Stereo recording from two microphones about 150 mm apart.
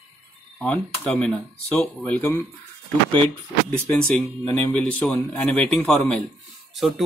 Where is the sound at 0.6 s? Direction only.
10° left (ahead or behind).